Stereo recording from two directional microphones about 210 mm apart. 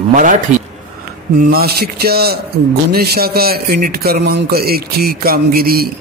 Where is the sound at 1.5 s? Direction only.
45° right (ahead or behind).